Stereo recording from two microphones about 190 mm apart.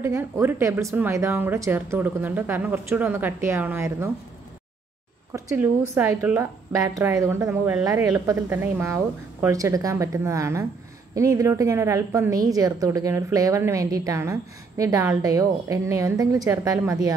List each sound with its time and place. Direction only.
0.0 s a woman's voice: 15° right (ahead or behind)
5.3 s a woman's voice: 15° right (ahead or behind)